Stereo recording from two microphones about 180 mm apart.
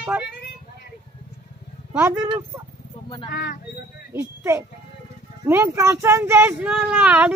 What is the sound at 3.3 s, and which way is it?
Speech, 60° left (ahead or behind).